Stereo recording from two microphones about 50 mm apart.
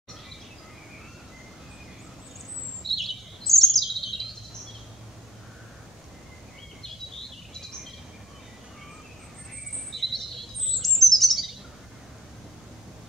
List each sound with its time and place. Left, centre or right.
2.8 s bird vocalization: centre
6.8 s bird: centre
9.8 s bird vocalization: centre